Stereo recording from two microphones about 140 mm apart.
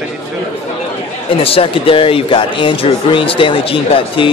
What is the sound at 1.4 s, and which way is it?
Speech, 40° left (ahead or behind).